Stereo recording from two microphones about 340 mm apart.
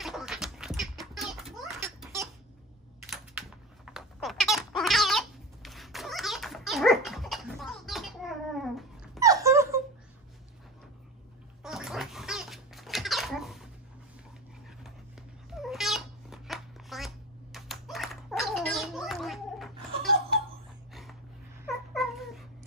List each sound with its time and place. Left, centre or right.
0.0 s a sound: centre
3.1 s goat: centre
11.6 s gargling: centre
15.5 s cat: centre
20.9 s a sound: centre
21.9 s cat: centre